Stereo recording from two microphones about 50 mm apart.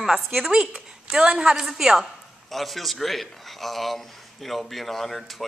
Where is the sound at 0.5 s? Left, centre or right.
Right.